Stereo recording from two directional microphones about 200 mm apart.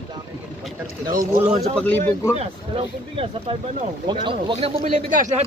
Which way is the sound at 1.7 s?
10° left (ahead or behind).